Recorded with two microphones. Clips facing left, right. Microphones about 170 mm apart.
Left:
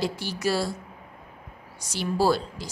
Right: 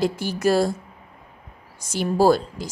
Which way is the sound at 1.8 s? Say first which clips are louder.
Right 6 dB; 50° right (ahead or behind).